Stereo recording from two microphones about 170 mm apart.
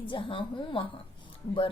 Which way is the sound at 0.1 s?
30° left (ahead or behind).